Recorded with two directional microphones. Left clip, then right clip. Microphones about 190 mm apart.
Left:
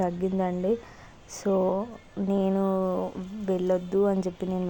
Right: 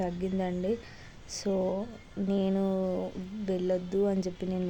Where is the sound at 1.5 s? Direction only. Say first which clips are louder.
Left 6 dB; 25° left (ahead or behind).